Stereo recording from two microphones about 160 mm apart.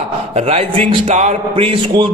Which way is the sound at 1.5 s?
35° right (ahead or behind).